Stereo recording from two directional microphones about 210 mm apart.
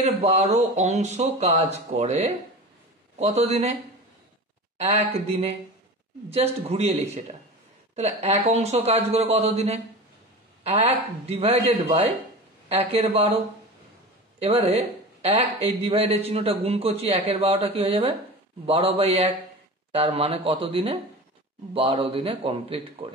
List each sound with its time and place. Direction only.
0.0 s speech: 30° right (ahead or behind)
4.7 s a man's voice: 30° right (ahead or behind)
14.4 s a man's voice: 30° right (ahead or behind)